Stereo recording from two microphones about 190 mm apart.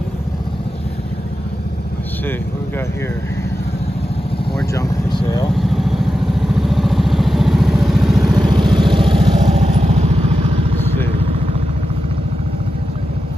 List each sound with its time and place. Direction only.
5.6 s vehicle: centre (ahead or behind)
8.7 s vehicle: 25° right (ahead or behind)